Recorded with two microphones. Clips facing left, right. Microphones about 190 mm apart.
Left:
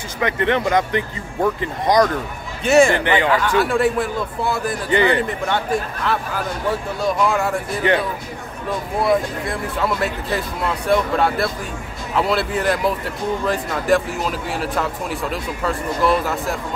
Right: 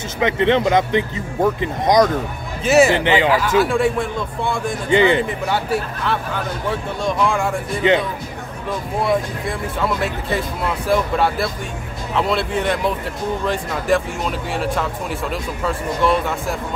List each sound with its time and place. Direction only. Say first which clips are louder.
0.2 s speech: right 3 dB; 20° right (ahead or behind)
2.6 s speech: even; centre (ahead or behind)
2.9 s speech: right 2 dB; 20° right (ahead or behind)
3.2 s speech: right 2 dB; 5° right (ahead or behind)
4.8 s speech: right 3 dB; 20° right (ahead or behind)
5.5 s speech: even; centre (ahead or behind)
7.8 s speech: right 2 dB; 20° right (ahead or behind)
9.0 s speech: left 2 dB; centre (ahead or behind)